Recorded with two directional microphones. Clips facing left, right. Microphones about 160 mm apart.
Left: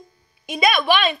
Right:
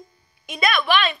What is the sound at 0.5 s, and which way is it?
Speech, 15° left (ahead or behind).